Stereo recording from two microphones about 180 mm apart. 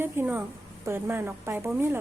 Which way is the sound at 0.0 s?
10° right (ahead or behind).